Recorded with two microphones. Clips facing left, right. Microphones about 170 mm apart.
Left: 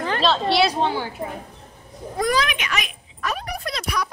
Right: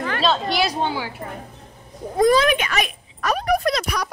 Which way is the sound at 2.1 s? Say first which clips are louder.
Right 6 dB; 25° right (ahead or behind).